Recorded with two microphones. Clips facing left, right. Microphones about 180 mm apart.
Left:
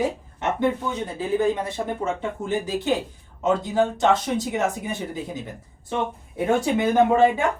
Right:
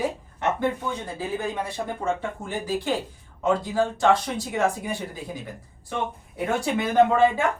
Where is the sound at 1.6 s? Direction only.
20° left (ahead or behind).